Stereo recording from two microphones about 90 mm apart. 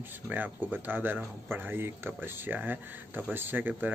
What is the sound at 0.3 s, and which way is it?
Speech, 20° right (ahead or behind).